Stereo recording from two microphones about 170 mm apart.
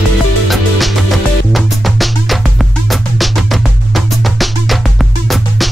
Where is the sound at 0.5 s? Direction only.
Centre (ahead or behind).